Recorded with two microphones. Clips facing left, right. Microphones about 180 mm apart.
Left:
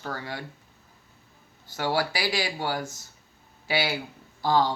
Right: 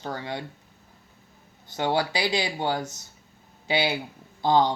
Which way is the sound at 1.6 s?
20° right (ahead or behind).